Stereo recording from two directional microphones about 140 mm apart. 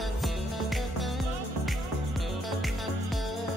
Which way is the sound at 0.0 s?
Centre (ahead or behind).